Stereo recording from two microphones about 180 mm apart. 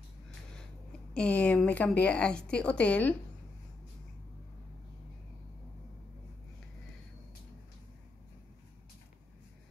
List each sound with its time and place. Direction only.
1.1 s a woman's voice: 5° left (ahead or behind)